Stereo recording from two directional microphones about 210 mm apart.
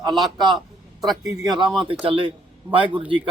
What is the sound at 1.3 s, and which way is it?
Speech, 20° right (ahead or behind).